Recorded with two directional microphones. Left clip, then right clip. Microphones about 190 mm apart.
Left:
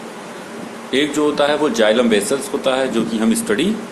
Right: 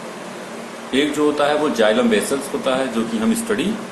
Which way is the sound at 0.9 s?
40° left (ahead or behind).